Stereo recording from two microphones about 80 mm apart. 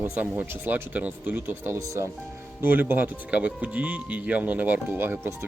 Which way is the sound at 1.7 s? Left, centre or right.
Right.